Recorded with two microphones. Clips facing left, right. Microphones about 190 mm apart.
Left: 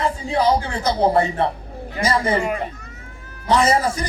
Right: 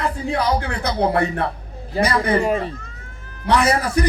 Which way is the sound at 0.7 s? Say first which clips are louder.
Left 2 dB; 60° right (ahead or behind).